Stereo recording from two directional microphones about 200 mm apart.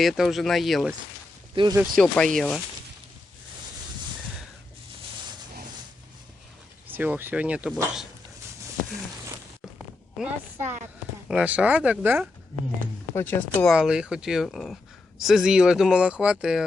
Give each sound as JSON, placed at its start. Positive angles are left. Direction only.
{"t": 0.0, "sound": "speech", "side_deg": 0}
{"t": 1.5, "sound": "speech", "side_deg": -20}
{"t": 2.0, "sound": "speech", "side_deg": 5}
{"t": 6.8, "sound": "speech", "side_deg": -10}
{"t": 10.2, "sound": "speech", "side_deg": -10}
{"t": 13.1, "sound": "speech", "side_deg": 10}
{"t": 13.7, "sound": "speech", "side_deg": -5}